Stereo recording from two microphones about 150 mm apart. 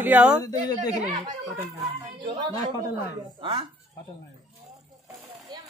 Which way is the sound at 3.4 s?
35° right (ahead or behind).